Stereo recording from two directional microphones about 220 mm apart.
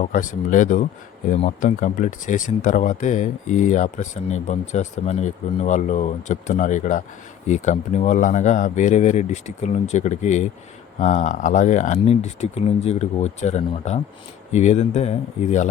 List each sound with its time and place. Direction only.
0.0 s speech: 35° left (ahead or behind)